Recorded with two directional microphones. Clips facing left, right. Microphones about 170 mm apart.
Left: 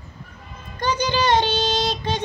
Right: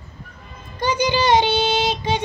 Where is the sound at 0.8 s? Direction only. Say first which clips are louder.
Right 2 dB; 10° right (ahead or behind).